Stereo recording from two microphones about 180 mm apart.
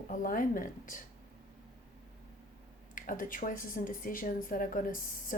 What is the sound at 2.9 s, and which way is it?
Speech, 50° left (ahead or behind).